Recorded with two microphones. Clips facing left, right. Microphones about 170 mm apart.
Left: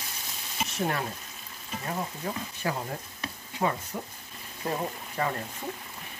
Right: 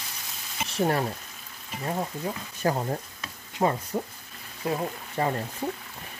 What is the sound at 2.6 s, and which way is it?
Speech, 40° right (ahead or behind).